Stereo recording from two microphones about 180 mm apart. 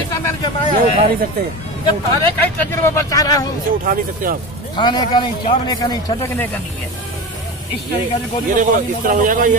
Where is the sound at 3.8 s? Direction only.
50° right (ahead or behind).